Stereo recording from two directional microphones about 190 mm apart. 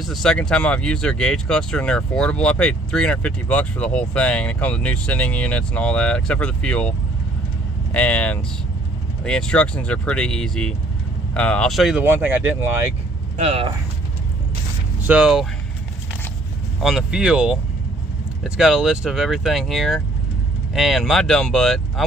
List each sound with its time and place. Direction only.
0.0 s speech: centre (ahead or behind)
13.4 s speech: 30° right (ahead or behind)
15.0 s speech: 5° right (ahead or behind)
16.8 s speech: centre (ahead or behind)